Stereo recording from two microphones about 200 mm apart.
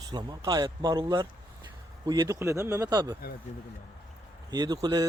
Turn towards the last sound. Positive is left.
turn(degrees=-20)  # may be behind; listen again after turning